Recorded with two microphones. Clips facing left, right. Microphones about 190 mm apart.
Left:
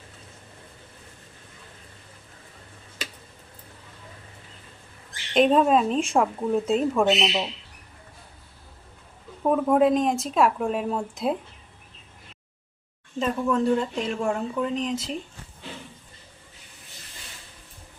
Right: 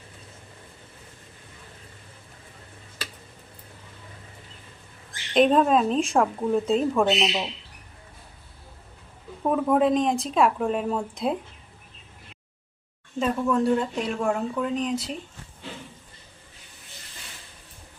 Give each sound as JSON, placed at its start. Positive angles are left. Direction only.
{"t": 5.3, "sound": "speech", "side_deg": 0}
{"t": 9.4, "sound": "speech", "side_deg": 0}
{"t": 13.1, "sound": "speech", "side_deg": 0}